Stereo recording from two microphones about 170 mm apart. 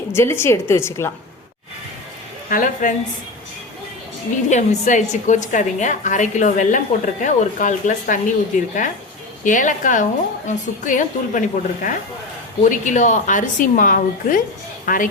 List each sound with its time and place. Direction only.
0.1 s a woman's voice: 15° left (ahead or behind)
2.5 s a woman's voice: 55° left (ahead or behind)
4.4 s a woman's voice: 45° left (ahead or behind)